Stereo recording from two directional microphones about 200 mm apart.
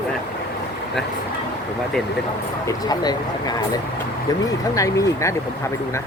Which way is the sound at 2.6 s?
20° left (ahead or behind).